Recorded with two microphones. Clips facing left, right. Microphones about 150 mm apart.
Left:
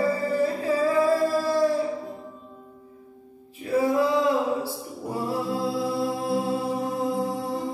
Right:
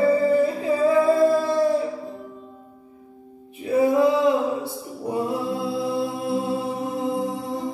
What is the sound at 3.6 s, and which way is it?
Music, 20° right (ahead or behind).